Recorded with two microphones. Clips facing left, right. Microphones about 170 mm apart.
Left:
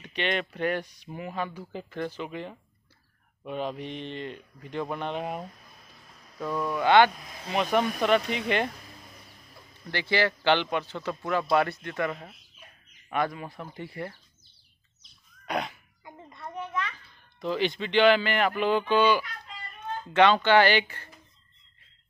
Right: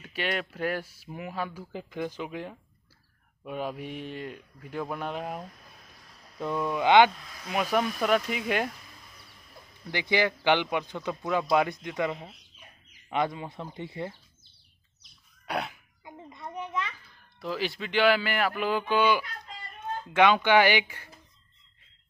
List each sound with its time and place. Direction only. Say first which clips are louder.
0.0 s speech: left 2 dB; 5° right (ahead or behind)
6.4 s speech: even; 15° right (ahead or behind)
7.2 s speech: left 2 dB; 25° left (ahead or behind)
7.7 s speech: left 2 dB; 5° right (ahead or behind)
9.8 s speech: even; 15° right (ahead or behind)
15.4 s a sound: left 1 dB; 10° right (ahead or behind)
17.4 s speech: left 4 dB; 5° right (ahead or behind)